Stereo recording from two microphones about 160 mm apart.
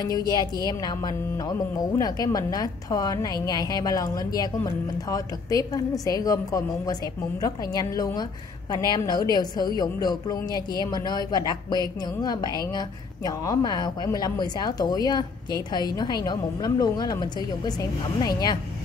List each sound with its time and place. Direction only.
0.0 s a woman's voice: 25° left (ahead or behind)